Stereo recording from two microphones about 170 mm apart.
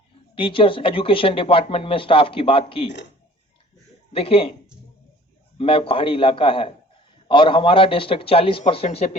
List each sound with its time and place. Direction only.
0.3 s speech: 30° left (ahead or behind)
4.1 s speech: 35° left (ahead or behind)
5.5 s speech: 35° left (ahead or behind)